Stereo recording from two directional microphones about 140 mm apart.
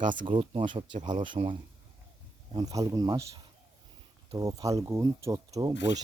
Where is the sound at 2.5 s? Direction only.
25° right (ahead or behind).